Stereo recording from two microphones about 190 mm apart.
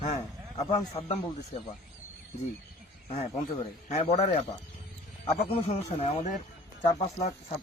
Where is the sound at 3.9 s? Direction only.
35° left (ahead or behind).